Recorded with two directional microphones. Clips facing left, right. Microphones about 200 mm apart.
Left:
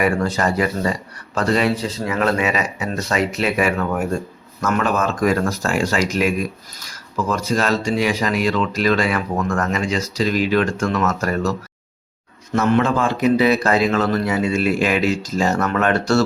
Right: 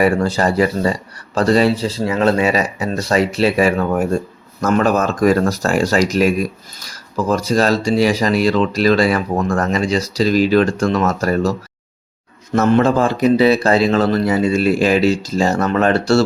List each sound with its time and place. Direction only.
0.0 s speech: 30° right (ahead or behind)
12.5 s speech: 35° right (ahead or behind)